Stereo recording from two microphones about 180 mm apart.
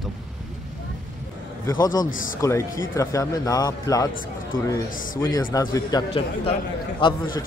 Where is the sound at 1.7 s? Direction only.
20° left (ahead or behind).